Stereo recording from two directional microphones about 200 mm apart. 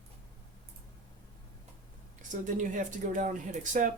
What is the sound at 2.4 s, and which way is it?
Speech, 40° right (ahead or behind).